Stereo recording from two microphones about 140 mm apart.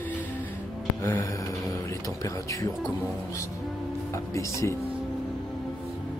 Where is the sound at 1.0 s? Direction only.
20° left (ahead or behind).